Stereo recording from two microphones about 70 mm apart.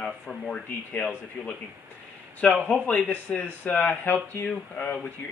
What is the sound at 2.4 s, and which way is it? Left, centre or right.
Speech, centre.